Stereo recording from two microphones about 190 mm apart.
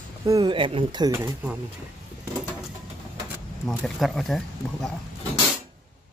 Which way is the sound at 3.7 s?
Centre (ahead or behind).